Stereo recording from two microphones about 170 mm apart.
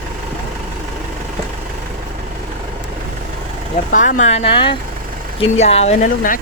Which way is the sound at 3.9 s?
50° left (ahead or behind).